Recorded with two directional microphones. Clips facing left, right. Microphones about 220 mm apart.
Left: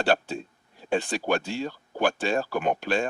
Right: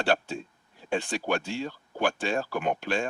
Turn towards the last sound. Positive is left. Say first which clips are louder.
# left 3 dB
turn(degrees=40)  # may be behind; listen again after turning